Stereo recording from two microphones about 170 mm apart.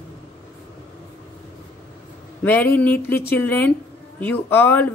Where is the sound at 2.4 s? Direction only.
10° left (ahead or behind).